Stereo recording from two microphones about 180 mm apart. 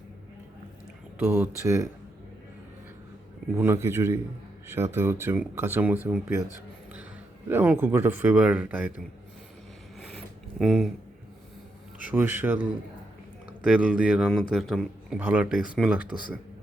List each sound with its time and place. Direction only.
1.2 s speech: 10° right (ahead or behind)
3.5 s speech: 10° right (ahead or behind)
7.5 s speech: 10° right (ahead or behind)
10.6 s speech: centre (ahead or behind)
11.9 s speech: 10° right (ahead or behind)
13.7 s speech: 5° right (ahead or behind)